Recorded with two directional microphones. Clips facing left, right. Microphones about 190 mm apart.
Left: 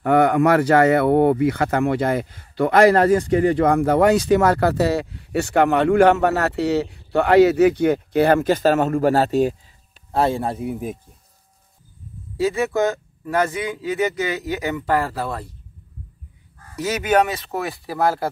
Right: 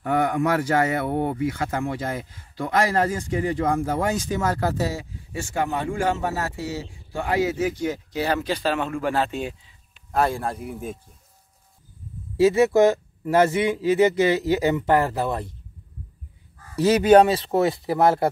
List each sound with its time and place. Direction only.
0.0 s speech: 70° left (ahead or behind); by 9.6 s 40° left (ahead or behind)
10.1 s speech: 30° left (ahead or behind)
10.4 s speech: 5° left (ahead or behind)
12.4 s speech: 25° right (ahead or behind)
16.7 s speech: 30° right (ahead or behind)